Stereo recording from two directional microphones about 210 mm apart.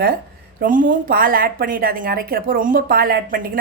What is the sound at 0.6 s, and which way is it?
A woman's voice, 40° right (ahead or behind).